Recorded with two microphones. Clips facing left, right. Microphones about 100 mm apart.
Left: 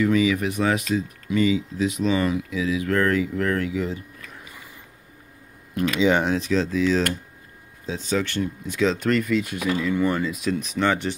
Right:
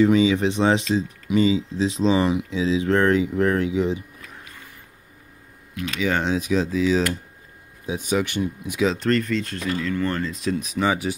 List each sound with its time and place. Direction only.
0.0 s speech: 25° right (ahead or behind)
5.9 s speech: 20° left (ahead or behind)
6.2 s speech: 5° right (ahead or behind)
8.9 s speech: 5° left (ahead or behind)